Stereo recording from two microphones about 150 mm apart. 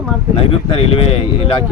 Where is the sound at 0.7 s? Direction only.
40° left (ahead or behind).